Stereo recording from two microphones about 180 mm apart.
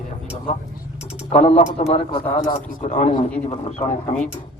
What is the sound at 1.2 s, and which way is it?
A man's voice, 35° left (ahead or behind).